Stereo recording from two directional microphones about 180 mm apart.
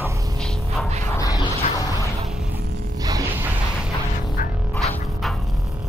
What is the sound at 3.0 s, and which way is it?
Music, 20° right (ahead or behind).